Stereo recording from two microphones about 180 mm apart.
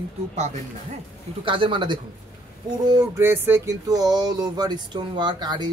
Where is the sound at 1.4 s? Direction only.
30° right (ahead or behind).